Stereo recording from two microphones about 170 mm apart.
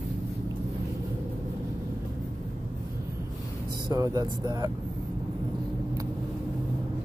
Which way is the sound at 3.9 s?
20° right (ahead or behind).